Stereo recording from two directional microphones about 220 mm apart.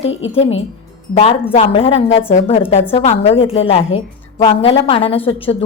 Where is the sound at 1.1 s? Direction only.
30° left (ahead or behind).